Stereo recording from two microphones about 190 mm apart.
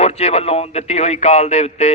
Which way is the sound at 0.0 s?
35° left (ahead or behind).